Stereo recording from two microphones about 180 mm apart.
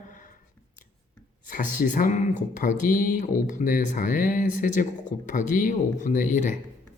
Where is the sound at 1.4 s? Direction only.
45° left (ahead or behind).